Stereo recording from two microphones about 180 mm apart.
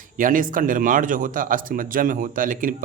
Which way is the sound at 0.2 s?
50° right (ahead or behind).